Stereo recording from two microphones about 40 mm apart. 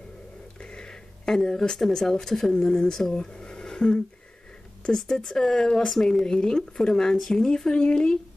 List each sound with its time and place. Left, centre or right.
0.6 s speech: left
4.9 s speech: centre
7.4 s speech: centre